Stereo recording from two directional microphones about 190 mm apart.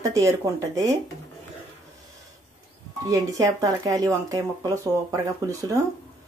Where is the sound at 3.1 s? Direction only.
20° right (ahead or behind).